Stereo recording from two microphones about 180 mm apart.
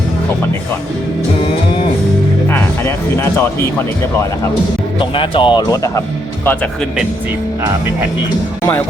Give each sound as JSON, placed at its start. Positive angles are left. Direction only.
{"t": 4.9, "sound": "speech", "side_deg": 30}